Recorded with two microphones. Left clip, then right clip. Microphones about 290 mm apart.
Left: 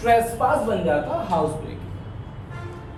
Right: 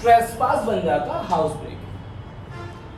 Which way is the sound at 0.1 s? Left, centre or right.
Centre.